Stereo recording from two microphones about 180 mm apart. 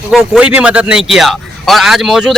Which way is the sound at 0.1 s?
5° right (ahead or behind).